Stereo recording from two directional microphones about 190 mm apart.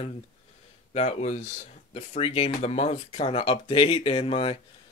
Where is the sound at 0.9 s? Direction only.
35° left (ahead or behind).